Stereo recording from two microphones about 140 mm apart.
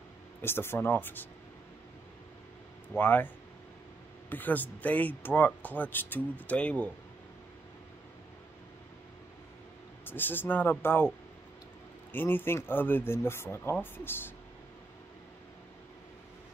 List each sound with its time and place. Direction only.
0.4 s speech: 15° left (ahead or behind)
3.0 s speech: 15° left (ahead or behind)
4.3 s speech: 15° left (ahead or behind)
10.0 s speech: 15° left (ahead or behind)
12.1 s speech: 15° left (ahead or behind)